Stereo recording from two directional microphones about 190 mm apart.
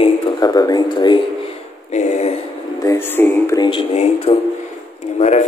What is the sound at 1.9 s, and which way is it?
Speech, 40° left (ahead or behind).